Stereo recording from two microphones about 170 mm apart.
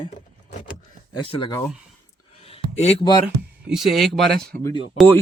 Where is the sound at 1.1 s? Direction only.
30° left (ahead or behind).